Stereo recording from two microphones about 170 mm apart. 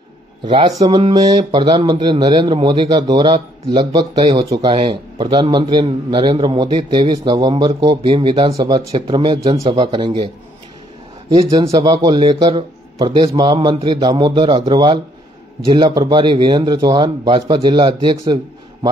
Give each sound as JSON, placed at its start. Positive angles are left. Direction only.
{"t": 0.5, "sound": "speech", "side_deg": -25}
{"t": 11.3, "sound": "speech", "side_deg": -20}